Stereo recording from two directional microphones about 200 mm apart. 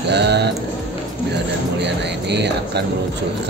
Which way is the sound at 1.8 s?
60° right (ahead or behind).